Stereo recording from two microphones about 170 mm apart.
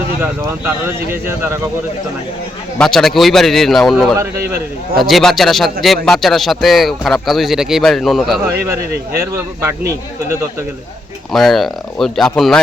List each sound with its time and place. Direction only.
0.2 s speech: 15° right (ahead or behind)
2.7 s speech: 5° left (ahead or behind)
9.3 s speech: 15° right (ahead or behind)
11.3 s speech: centre (ahead or behind)